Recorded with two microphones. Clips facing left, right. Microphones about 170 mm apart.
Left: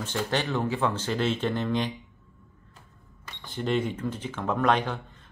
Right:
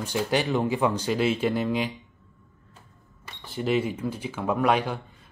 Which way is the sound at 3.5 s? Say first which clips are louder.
Right 2 dB; 5° right (ahead or behind).